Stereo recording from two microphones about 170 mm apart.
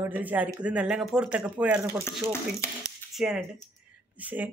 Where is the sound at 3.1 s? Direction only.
Centre (ahead or behind).